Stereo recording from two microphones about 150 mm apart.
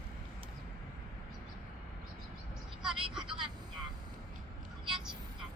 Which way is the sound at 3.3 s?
35° right (ahead or behind).